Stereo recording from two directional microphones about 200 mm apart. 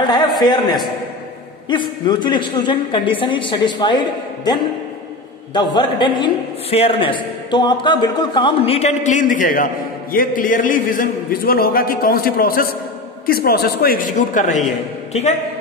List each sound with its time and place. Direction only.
0.4 s a man's voice: 20° left (ahead or behind)
5.5 s a man's voice: 20° left (ahead or behind); by 14.6 s 40° left (ahead or behind)